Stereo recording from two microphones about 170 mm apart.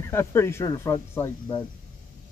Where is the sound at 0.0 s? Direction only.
15° left (ahead or behind).